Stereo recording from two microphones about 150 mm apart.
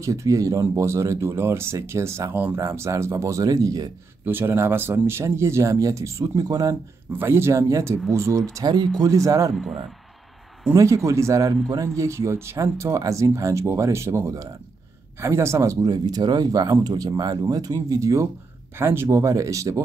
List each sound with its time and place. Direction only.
0.0 s speech: 20° right (ahead or behind)
4.3 s speech: 15° right (ahead or behind)
10.7 s speech: 20° right (ahead or behind)